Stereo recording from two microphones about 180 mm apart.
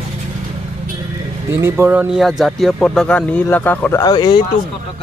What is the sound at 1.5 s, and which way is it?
Speech, 15° right (ahead or behind).